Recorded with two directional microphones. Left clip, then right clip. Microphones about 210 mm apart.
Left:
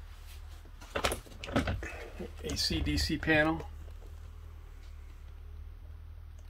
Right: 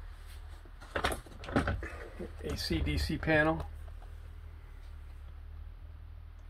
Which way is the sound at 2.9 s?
Centre (ahead or behind).